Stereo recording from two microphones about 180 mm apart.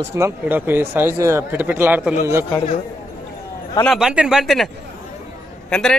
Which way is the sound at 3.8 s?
Centre (ahead or behind).